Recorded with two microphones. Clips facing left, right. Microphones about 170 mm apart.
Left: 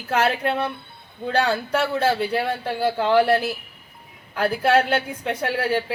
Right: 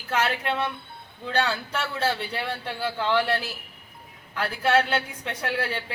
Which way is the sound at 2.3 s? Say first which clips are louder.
Left 7 dB; 35° left (ahead or behind).